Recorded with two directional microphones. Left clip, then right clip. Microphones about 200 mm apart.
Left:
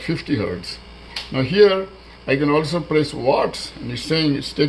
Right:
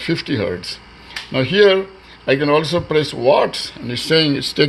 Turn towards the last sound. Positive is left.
turn(degrees=-45)  # may be behind; listen again after turning